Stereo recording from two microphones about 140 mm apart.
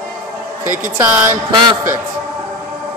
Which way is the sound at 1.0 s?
15° right (ahead or behind).